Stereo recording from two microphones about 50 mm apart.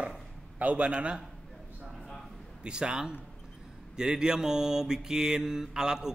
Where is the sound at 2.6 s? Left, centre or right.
Centre.